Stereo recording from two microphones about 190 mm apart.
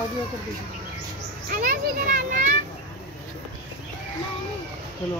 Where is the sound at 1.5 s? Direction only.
45° right (ahead or behind).